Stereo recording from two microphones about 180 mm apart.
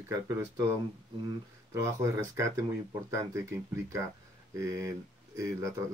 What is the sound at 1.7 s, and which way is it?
Speech, 15° right (ahead or behind).